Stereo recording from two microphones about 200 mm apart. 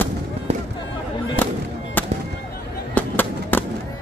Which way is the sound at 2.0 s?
10° left (ahead or behind).